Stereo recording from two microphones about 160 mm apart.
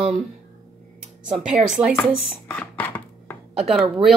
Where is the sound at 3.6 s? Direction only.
5° right (ahead or behind).